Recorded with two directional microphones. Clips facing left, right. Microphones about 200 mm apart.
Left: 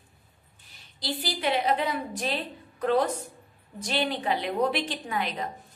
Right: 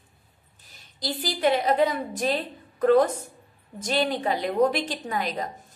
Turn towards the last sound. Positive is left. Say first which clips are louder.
# right 2 dB
turn(degrees=-40)  # may be behind; listen again after turning